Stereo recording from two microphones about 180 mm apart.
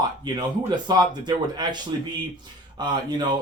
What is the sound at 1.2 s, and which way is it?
Speech, 25° right (ahead or behind).